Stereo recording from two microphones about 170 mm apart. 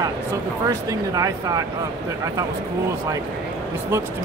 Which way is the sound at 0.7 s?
20° right (ahead or behind).